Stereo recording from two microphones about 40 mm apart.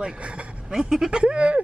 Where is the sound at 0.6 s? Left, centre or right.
Centre.